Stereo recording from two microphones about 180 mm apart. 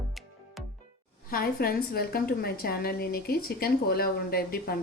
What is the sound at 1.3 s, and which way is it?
A woman's voice, 55° left (ahead or behind).